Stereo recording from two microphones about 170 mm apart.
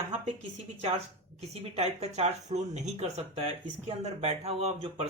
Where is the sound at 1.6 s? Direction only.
40° right (ahead or behind).